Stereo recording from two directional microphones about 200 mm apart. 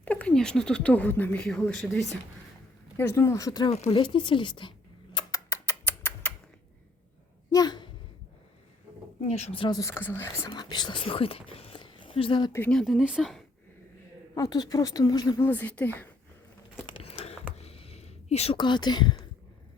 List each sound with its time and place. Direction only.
0.0 s speech: 5° left (ahead or behind)
3.0 s speech: 15° left (ahead or behind)
3.7 s speech: 30° left (ahead or behind)
5.1 s a sound: 15° left (ahead or behind)
7.5 s a sound: 20° left (ahead or behind)
9.2 s speech: 30° left (ahead or behind)
12.5 s speech: 5° left (ahead or behind)
14.3 s speech: 20° left (ahead or behind)
15.4 s speech: 10° left (ahead or behind)
16.8 s a sound: 25° left (ahead or behind)
17.6 s whispering: 30° left (ahead or behind)